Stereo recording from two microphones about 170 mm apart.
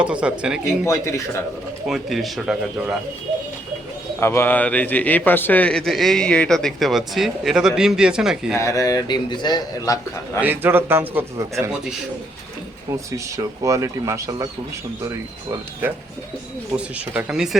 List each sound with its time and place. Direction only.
0.0 s speech: 5° right (ahead or behind)
0.9 s speech: 15° left (ahead or behind)
1.9 s speech: centre (ahead or behind)
4.2 s speech: 15° left (ahead or behind); by 8.5 s 5° right (ahead or behind)
8.5 s a man's voice: 20° left (ahead or behind)
10.4 s speech: 10° right (ahead or behind)
12.9 s speech: 20° right (ahead or behind)
16.7 s speech: 5° right (ahead or behind)